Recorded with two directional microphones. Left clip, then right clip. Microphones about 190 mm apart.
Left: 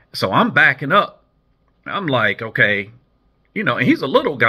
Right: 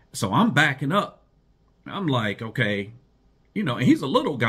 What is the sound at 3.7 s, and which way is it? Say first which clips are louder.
Speech: left 4 dB; 25° right (ahead or behind).